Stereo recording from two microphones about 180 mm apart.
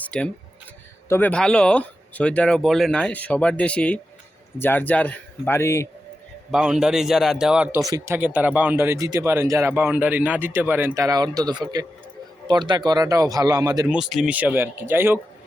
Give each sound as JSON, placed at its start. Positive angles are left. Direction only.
{"t": 0.0, "sound": "a sound", "side_deg": 5}
{"t": 1.0, "sound": "speech", "side_deg": 10}
{"t": 6.5, "sound": "a man's voice", "side_deg": -5}
{"t": 7.9, "sound": "speech", "side_deg": -15}
{"t": 13.8, "sound": "speech", "side_deg": -5}